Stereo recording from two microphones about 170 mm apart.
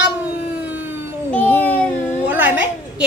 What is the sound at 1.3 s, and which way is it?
Speech, 10° left (ahead or behind).